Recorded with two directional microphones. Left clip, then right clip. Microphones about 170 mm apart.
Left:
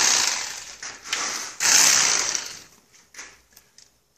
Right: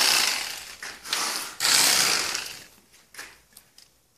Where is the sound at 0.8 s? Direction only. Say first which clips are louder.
Left 1 dB; 20° right (ahead or behind).